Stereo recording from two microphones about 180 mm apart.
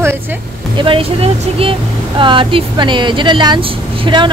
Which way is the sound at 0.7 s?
30° right (ahead or behind).